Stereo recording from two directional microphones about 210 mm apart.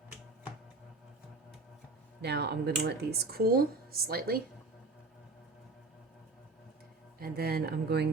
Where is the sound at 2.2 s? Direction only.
50° right (ahead or behind).